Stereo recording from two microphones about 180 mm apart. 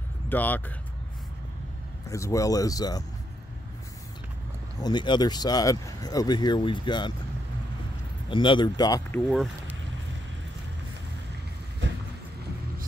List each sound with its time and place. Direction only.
0.3 s speech: 10° left (ahead or behind)
2.0 s speech: 15° left (ahead or behind)
4.8 s speech: 25° left (ahead or behind)
8.3 s speech: 25° left (ahead or behind)
9.3 s speech: centre (ahead or behind)